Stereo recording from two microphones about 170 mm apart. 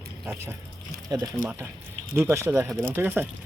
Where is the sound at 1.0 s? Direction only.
25° right (ahead or behind).